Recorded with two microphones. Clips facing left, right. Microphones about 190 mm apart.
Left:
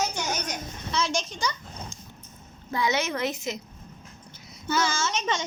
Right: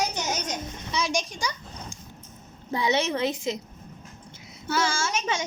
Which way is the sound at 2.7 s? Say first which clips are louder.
Right 2 dB; 30° right (ahead or behind).